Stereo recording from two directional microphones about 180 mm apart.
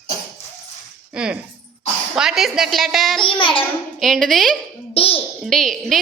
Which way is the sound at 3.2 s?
25° left (ahead or behind).